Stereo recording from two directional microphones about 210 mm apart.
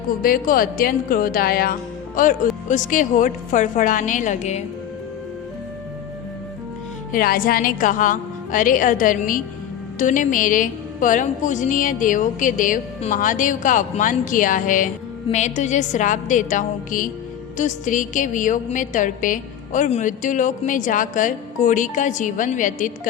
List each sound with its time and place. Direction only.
0.2 s a woman's voice: 45° left (ahead or behind)
7.1 s a woman's voice: 45° left (ahead or behind)